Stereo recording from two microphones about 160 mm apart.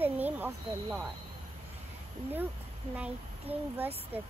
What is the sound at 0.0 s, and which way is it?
Speech, 10° right (ahead or behind).